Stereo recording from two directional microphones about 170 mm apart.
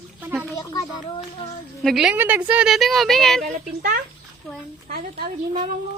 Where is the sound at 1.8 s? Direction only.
5° right (ahead or behind).